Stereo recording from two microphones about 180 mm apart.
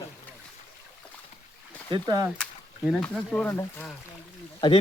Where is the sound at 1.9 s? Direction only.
20° right (ahead or behind).